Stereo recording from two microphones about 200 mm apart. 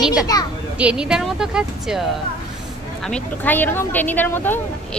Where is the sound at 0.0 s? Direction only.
5° right (ahead or behind).